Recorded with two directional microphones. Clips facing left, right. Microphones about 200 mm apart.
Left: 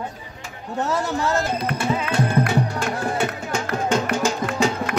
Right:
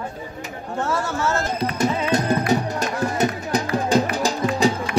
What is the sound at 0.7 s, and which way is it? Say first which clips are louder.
Speech: left 1 dB; 20° left (ahead or behind).